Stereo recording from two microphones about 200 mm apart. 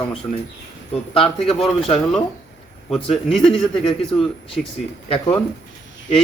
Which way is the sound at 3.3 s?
30° left (ahead or behind).